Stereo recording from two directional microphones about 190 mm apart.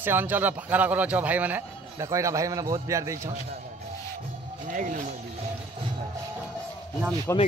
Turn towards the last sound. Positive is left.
turn(degrees=15)  # may be behind; listen again after turning